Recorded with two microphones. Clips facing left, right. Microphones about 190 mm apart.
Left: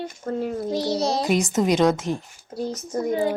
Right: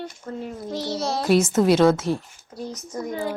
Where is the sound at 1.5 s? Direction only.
15° left (ahead or behind).